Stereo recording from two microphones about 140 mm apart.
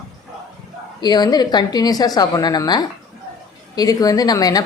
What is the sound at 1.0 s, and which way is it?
A woman's voice, 30° left (ahead or behind).